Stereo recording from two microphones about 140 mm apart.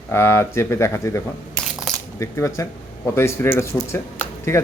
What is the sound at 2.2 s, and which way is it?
Speech, 20° left (ahead or behind).